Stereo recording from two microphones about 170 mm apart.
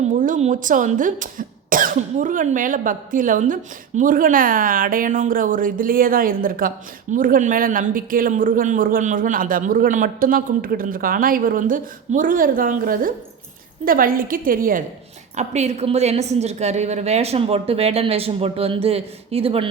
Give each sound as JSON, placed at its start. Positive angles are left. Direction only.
{"t": 0.0, "sound": "a woman's voice", "side_deg": -45}
{"t": 15.4, "sound": "a woman's voice", "side_deg": -40}